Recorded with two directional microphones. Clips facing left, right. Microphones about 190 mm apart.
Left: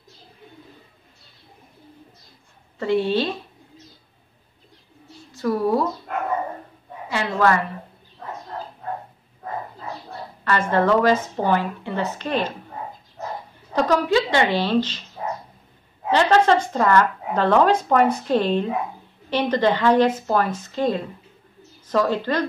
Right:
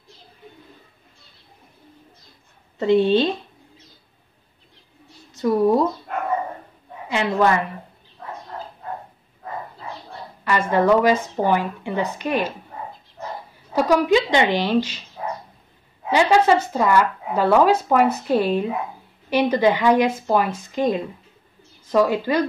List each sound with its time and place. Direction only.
2.8 s speech: 20° right (ahead or behind)
5.3 s speech: 20° right (ahead or behind)
7.1 s speech: 20° right (ahead or behind)
10.7 s speech: 10° right (ahead or behind)
13.7 s speech: 15° right (ahead or behind)
16.1 s speech: 10° right (ahead or behind)